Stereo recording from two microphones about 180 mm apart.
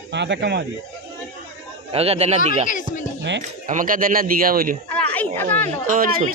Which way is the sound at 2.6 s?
45° left (ahead or behind).